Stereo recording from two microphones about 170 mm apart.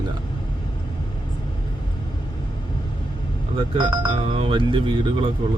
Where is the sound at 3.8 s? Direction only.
30° right (ahead or behind).